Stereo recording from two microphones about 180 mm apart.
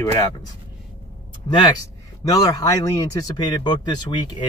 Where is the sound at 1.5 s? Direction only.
25° left (ahead or behind).